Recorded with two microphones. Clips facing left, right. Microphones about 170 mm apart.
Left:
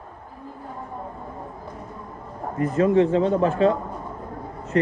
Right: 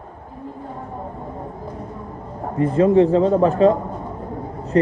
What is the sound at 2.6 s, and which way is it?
Speech, 30° right (ahead or behind).